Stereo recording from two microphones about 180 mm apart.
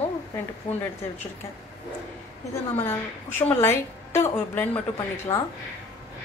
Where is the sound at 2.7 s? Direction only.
10° left (ahead or behind).